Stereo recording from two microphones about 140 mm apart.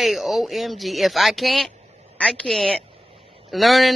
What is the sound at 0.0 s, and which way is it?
Speech, centre (ahead or behind).